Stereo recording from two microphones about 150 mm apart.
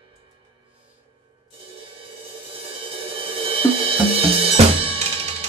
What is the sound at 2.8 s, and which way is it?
Cymbal, 40° right (ahead or behind).